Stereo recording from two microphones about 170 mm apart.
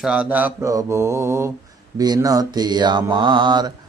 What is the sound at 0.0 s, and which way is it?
Mantra, 5° right (ahead or behind).